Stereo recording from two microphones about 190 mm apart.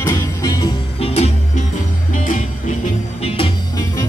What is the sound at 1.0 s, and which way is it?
Music, 35° left (ahead or behind).